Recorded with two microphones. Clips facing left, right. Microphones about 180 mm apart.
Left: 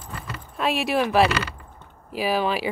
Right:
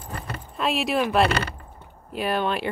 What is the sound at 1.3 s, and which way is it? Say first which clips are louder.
Speech: right 1 dB; 55° right (ahead or behind).